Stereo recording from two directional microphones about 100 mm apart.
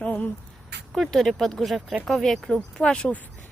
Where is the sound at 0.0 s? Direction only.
15° left (ahead or behind).